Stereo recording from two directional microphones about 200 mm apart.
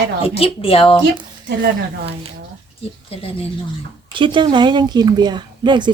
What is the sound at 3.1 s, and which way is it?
Speech, 30° left (ahead or behind).